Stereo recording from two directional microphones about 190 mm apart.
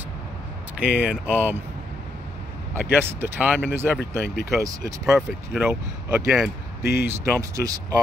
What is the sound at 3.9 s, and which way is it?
Speech, 55° left (ahead or behind).